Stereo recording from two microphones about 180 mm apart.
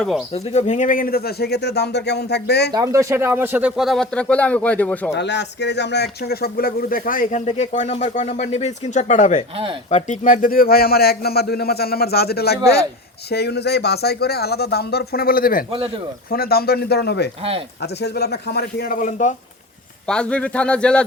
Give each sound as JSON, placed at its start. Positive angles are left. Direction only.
{"t": 0.3, "sound": "speech", "side_deg": 35}
{"t": 2.7, "sound": "speech", "side_deg": -15}
{"t": 5.1, "sound": "speech", "side_deg": 75}
{"t": 20.1, "sound": "speech", "side_deg": 5}